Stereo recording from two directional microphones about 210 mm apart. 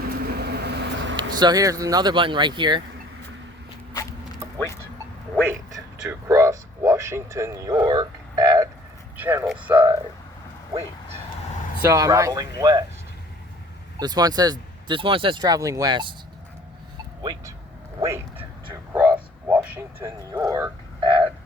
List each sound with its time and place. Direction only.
0.0 s vehicle: 45° right (ahead or behind)
1.4 s speech: 20° right (ahead or behind)
5.7 s a sound: 15° right (ahead or behind)
9.1 s speech: 10° right (ahead or behind)
11.8 s speech: 15° right (ahead or behind)
14.0 s speech: 20° right (ahead or behind)
18.0 s speech: 15° right (ahead or behind)
18.7 s a sound: 10° right (ahead or behind)